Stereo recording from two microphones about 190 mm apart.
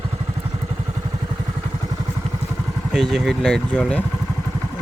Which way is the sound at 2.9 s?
Centre (ahead or behind).